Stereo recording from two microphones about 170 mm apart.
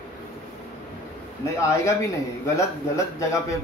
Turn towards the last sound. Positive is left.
turn(degrees=20)  # may be behind; listen again after turning